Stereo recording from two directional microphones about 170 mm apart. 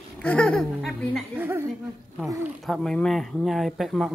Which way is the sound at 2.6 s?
Centre (ahead or behind).